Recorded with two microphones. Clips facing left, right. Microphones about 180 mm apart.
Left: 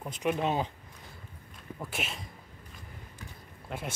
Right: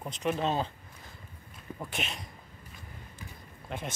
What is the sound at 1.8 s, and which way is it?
Speech, 5° left (ahead or behind).